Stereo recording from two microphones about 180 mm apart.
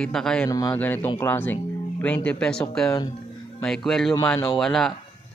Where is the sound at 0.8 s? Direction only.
10° left (ahead or behind).